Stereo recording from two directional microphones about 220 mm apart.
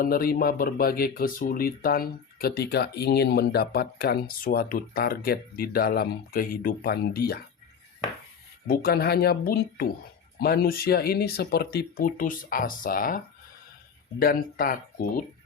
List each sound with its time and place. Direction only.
0.0 s speech: 40° left (ahead or behind)
8.6 s speech: 45° left (ahead or behind)